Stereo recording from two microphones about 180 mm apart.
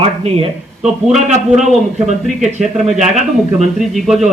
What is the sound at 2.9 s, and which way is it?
Speech, 40° right (ahead or behind).